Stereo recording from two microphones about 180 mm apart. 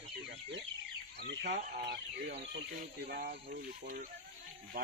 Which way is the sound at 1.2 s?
70° right (ahead or behind).